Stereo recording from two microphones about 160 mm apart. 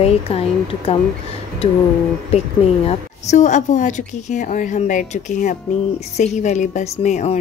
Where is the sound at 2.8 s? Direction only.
45° left (ahead or behind).